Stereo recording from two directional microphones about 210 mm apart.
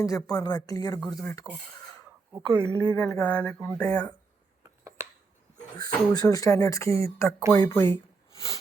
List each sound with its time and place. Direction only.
0.3 s speech: 20° left (ahead or behind)
2.3 s a woman's voice: 15° right (ahead or behind)
2.8 s speech: 10° left (ahead or behind)
4.8 s a sound: 15° right (ahead or behind)
5.7 s speech: 20° left (ahead or behind)